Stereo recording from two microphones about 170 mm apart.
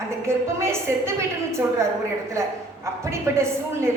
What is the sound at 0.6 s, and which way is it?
Speech, 15° right (ahead or behind).